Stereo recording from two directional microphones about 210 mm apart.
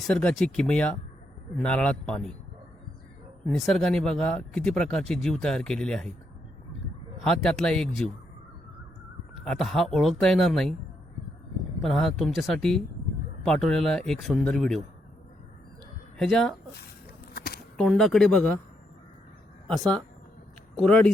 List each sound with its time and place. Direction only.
0.1 s speech: 5° left (ahead or behind)
3.4 s speech: centre (ahead or behind)
7.3 s speech: 5° left (ahead or behind)
9.3 s speech: centre (ahead or behind)
11.8 s speech: centre (ahead or behind)
16.1 s speech: centre (ahead or behind)
17.3 s a sound: 45° left (ahead or behind)
17.7 s speech: centre (ahead or behind)
19.6 s speech: centre (ahead or behind)